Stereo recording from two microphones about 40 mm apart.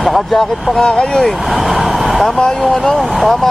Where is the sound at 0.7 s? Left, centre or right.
Centre.